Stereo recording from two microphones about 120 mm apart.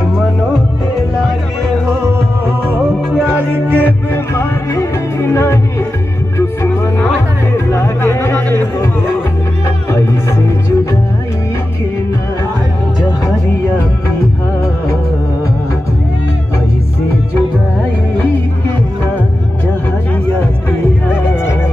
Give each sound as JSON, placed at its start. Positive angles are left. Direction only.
{"t": 0.0, "sound": "music", "side_deg": -5}
{"t": 2.8, "sound": "music", "side_deg": -5}
{"t": 3.3, "sound": "music", "side_deg": -15}
{"t": 3.8, "sound": "music", "side_deg": 20}